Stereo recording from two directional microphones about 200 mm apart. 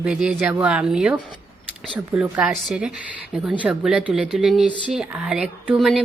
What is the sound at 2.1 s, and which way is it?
Speech, 5° right (ahead or behind).